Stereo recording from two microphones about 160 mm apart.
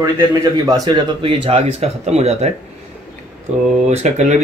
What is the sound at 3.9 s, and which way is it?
Speech, 45° right (ahead or behind).